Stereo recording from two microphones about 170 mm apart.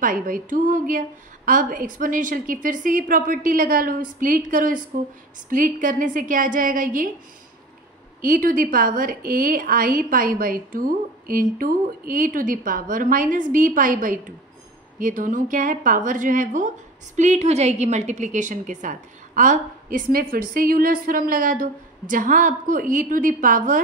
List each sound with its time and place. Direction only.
0.0 s speech: 55° right (ahead or behind)
8.2 s a woman's voice: 55° right (ahead or behind)